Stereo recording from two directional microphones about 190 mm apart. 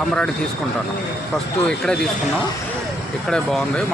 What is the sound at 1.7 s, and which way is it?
Speech, 5° left (ahead or behind).